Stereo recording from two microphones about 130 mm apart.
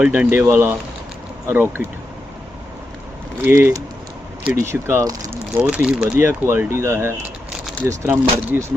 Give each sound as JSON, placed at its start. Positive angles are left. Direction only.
{"t": 0.0, "sound": "speech", "side_deg": -10}
{"t": 3.4, "sound": "speech", "side_deg": -15}
{"t": 5.6, "sound": "speech", "side_deg": -10}